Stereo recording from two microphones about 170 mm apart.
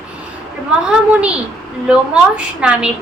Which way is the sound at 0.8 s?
5° right (ahead or behind).